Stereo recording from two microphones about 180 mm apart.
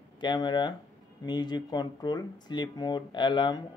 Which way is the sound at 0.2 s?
25° left (ahead or behind).